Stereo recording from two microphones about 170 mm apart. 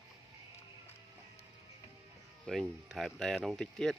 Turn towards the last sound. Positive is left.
turn(degrees=0)  # may be behind; listen again after turning